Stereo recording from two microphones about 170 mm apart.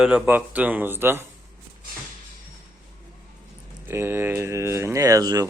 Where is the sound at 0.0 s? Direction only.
10° right (ahead or behind).